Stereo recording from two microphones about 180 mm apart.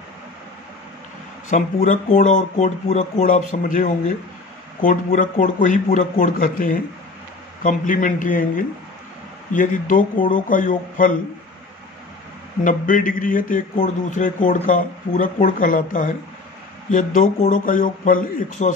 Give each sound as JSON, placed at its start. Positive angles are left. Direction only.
{"t": 1.5, "sound": "a man's voice", "side_deg": 45}
{"t": 12.6, "sound": "a man's voice", "side_deg": 45}